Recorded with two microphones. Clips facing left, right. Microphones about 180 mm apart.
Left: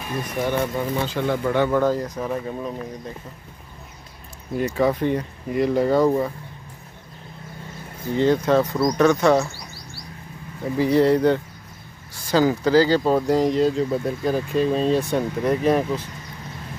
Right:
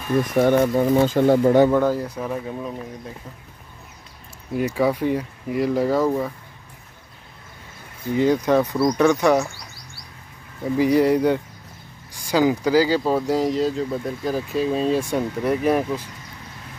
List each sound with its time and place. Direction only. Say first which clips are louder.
0.4 s speech: right 6 dB; 45° right (ahead or behind)
1.7 s speech: right 1 dB; 10° right (ahead or behind)
4.6 s speech: even; 10° right (ahead or behind)
8.2 s speech: even; 10° right (ahead or behind)
10.8 s speech: even; 10° right (ahead or behind)